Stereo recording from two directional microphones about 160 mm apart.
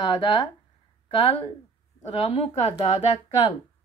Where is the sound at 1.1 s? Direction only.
35° left (ahead or behind).